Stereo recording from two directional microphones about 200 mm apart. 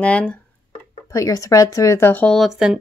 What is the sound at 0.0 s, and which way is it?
Speech, 5° left (ahead or behind).